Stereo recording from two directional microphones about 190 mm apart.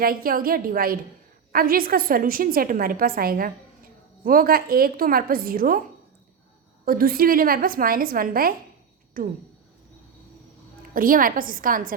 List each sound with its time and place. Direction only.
0.0 s a woman's voice: 50° right (ahead or behind)
6.8 s a woman's voice: 50° right (ahead or behind)
10.9 s a woman's voice: 45° right (ahead or behind)